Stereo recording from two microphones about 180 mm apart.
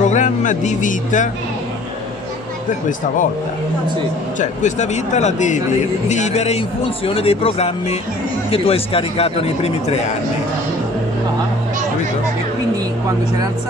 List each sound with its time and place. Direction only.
0.0 s a man's voice: 45° left (ahead or behind)
4.4 s speech: 40° left (ahead or behind)